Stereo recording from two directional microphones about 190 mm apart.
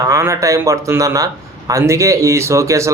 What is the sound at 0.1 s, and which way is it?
A man's voice, 15° right (ahead or behind).